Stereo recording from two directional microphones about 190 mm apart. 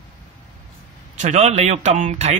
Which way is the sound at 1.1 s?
35° right (ahead or behind).